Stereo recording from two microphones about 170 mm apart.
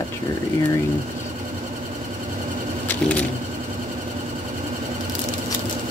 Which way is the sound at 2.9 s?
5° left (ahead or behind).